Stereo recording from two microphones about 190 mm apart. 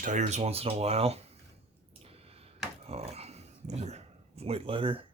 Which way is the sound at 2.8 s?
35° right (ahead or behind).